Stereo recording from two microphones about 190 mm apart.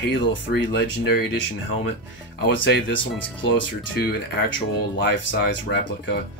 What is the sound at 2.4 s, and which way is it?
Speech, 70° left (ahead or behind).